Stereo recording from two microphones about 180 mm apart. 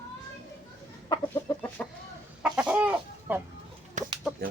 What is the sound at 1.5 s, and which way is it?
Chicken, 20° left (ahead or behind).